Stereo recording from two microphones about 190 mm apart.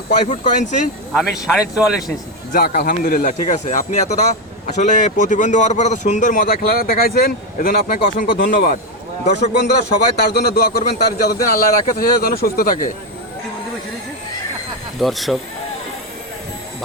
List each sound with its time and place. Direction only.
0.1 s speech: 40° left (ahead or behind)
1.1 s speech: centre (ahead or behind)
2.5 s speech: 50° left (ahead or behind)
10.2 s speech: 55° left (ahead or behind)
14.9 s speech: centre (ahead or behind)